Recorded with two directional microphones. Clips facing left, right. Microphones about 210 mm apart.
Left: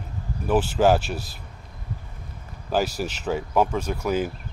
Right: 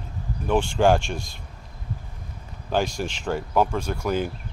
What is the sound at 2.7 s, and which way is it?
Speech, 5° left (ahead or behind).